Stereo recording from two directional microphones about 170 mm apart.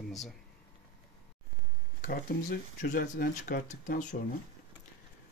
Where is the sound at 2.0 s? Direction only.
55° left (ahead or behind).